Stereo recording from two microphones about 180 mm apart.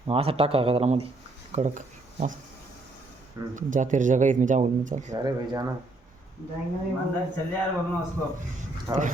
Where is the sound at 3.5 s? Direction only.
45° right (ahead or behind).